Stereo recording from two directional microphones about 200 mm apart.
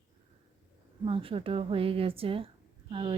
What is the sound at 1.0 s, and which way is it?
A woman's voice, 25° right (ahead or behind).